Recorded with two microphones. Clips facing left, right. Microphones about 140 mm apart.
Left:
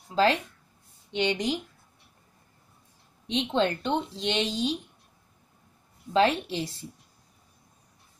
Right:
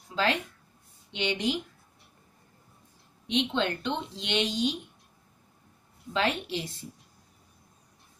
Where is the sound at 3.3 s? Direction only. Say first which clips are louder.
Left 2 dB; 40° left (ahead or behind).